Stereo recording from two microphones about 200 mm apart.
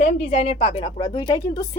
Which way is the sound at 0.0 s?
35° left (ahead or behind).